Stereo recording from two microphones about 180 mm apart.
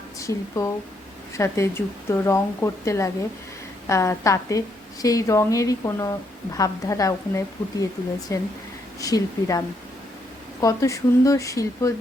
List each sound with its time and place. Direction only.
0.2 s a woman's voice: 15° left (ahead or behind)